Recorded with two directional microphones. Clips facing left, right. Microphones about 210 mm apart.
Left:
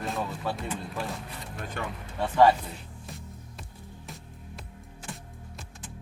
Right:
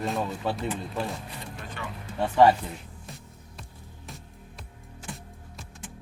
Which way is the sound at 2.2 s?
10° right (ahead or behind).